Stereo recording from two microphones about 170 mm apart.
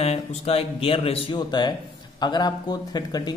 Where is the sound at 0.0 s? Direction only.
35° left (ahead or behind).